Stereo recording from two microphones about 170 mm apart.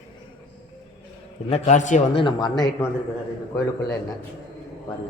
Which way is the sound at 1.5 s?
45° left (ahead or behind).